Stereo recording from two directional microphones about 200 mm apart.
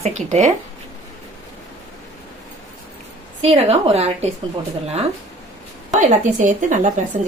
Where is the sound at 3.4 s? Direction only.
30° right (ahead or behind).